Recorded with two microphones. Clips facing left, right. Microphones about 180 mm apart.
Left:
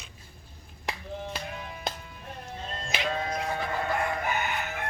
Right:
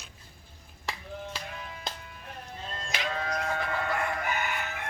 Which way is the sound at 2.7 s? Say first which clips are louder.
Left 3 dB; 25° left (ahead or behind).